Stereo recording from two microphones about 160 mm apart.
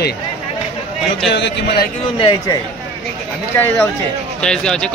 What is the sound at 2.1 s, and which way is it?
Speech, 25° left (ahead or behind).